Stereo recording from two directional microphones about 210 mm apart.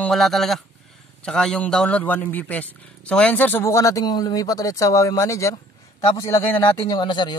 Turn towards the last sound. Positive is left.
turn(degrees=20)  # may be behind; listen again after turning